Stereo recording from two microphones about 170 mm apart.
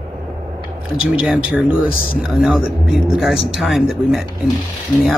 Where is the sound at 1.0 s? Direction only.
5° right (ahead or behind).